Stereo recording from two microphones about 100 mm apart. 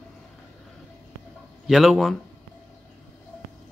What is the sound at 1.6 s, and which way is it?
Speech, centre (ahead or behind).